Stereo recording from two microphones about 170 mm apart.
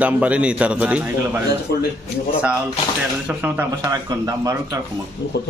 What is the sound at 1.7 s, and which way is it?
Speech, 70° left (ahead or behind).